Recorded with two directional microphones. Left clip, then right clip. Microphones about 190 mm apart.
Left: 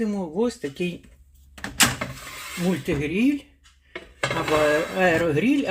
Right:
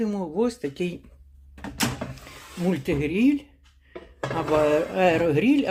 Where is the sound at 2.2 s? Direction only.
Centre (ahead or behind).